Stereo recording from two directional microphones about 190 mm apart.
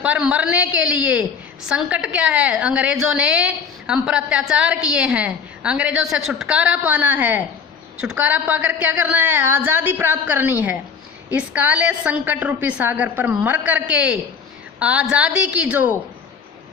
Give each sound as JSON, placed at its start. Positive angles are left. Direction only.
{"t": 0.0, "sound": "a woman's voice", "side_deg": -5}